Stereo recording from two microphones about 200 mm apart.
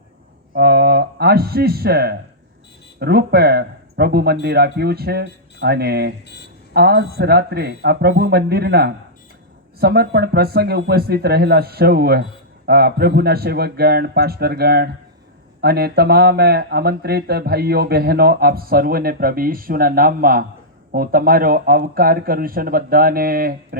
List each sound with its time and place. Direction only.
0.5 s speech: 55° right (ahead or behind)
6.2 s a sound: 55° left (ahead or behind)
6.7 s speech: 55° right (ahead or behind)